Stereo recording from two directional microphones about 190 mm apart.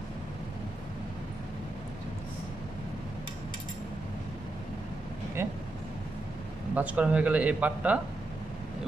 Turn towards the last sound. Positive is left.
turn(degrees=-5)  # may be behind; listen again after turning